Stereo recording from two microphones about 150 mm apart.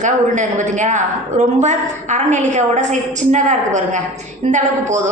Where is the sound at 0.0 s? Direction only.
55° right (ahead or behind).